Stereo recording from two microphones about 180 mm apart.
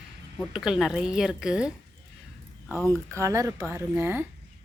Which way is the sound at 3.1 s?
15° right (ahead or behind).